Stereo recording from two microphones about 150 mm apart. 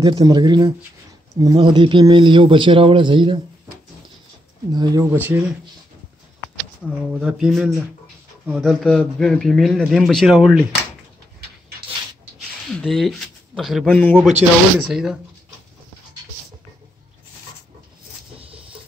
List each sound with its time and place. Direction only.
0.0 s speech: 25° right (ahead or behind)
4.7 s speech: 30° right (ahead or behind)
5.1 s speech: 15° right (ahead or behind)
7.0 s a man's voice: centre (ahead or behind)
12.6 s a man's voice: centre (ahead or behind)